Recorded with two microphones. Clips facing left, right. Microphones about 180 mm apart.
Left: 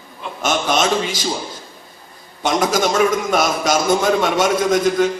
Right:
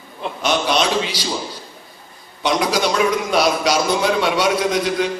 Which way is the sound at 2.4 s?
45° left (ahead or behind).